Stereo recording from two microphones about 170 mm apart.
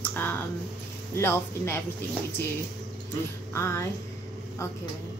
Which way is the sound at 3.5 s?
15° left (ahead or behind).